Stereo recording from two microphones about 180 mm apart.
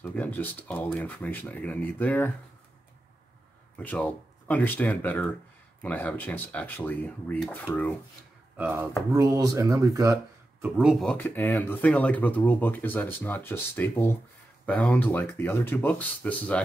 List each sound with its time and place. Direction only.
0.0 s speech: 10° left (ahead or behind)
3.7 s speech: 10° left (ahead or behind)
8.5 s speech: 10° right (ahead or behind)
10.6 s speech: 5° right (ahead or behind)